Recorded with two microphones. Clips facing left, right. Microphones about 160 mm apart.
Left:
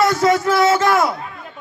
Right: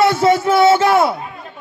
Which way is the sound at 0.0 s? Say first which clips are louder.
Right 2 dB; 25° right (ahead or behind).